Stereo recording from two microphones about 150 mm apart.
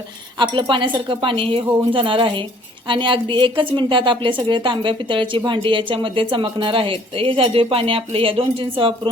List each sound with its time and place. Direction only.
0.3 s speech: 35° right (ahead or behind)